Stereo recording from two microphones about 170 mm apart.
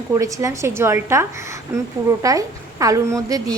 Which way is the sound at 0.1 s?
20° right (ahead or behind).